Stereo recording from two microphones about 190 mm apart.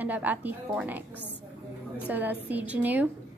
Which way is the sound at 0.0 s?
10° right (ahead or behind).